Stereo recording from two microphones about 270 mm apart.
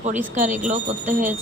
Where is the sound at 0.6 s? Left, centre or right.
Right.